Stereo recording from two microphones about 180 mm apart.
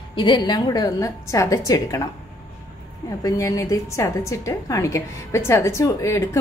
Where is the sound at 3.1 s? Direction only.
20° left (ahead or behind).